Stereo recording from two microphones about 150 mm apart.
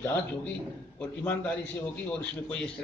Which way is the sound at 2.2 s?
10° left (ahead or behind).